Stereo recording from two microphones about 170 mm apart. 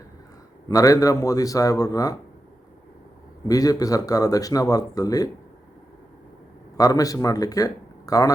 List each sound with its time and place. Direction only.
0.7 s speech: 20° left (ahead or behind)
3.4 s speech: 20° left (ahead or behind)
6.7 s speech: 20° left (ahead or behind)